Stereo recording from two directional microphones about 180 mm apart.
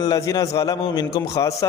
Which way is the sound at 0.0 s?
20° left (ahead or behind).